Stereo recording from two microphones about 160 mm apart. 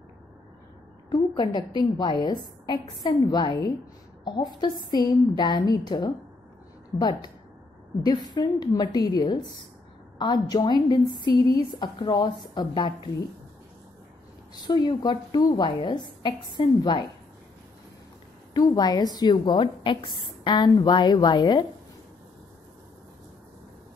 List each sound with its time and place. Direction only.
1.1 s a sound: 25° left (ahead or behind)
1.8 s a woman's voice: 25° left (ahead or behind)
14.5 s a woman's voice: 25° left (ahead or behind)
18.5 s a woman's voice: 25° left (ahead or behind)